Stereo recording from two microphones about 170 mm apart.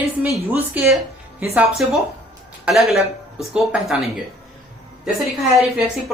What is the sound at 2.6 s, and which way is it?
Speech, centre (ahead or behind).